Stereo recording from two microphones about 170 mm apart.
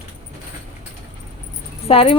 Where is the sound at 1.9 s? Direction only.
35° left (ahead or behind).